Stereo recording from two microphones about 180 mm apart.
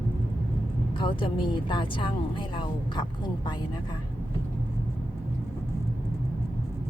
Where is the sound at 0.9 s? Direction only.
30° left (ahead or behind).